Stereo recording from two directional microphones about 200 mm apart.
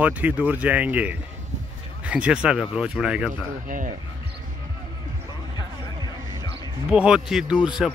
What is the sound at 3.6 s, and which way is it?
Speech, 40° right (ahead or behind).